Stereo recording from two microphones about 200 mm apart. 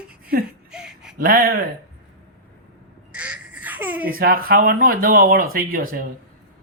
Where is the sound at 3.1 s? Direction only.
5° right (ahead or behind).